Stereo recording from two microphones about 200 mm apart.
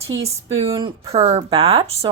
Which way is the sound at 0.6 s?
25° right (ahead or behind).